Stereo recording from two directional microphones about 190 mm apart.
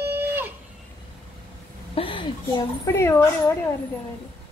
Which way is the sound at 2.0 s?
25° left (ahead or behind).